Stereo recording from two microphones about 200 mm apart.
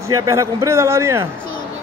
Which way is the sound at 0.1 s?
15° right (ahead or behind).